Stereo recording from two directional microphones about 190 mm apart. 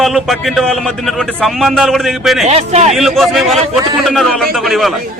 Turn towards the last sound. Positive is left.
turn(degrees=0)  # may be behind; listen again after turning